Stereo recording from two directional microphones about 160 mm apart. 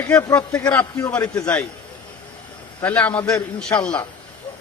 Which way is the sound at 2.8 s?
10° left (ahead or behind).